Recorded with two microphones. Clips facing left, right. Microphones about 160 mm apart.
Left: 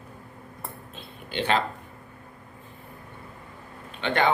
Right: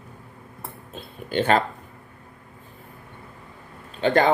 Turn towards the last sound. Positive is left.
turn(degrees=-40)  # may be behind; listen again after turning